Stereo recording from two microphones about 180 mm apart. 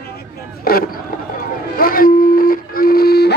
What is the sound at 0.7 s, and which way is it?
Speech, 55° left (ahead or behind).